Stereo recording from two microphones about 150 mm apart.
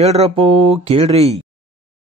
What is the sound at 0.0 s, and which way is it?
Speech, 45° right (ahead or behind).